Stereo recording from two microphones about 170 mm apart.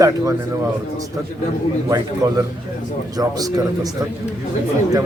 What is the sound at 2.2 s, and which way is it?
Speech, 25° right (ahead or behind).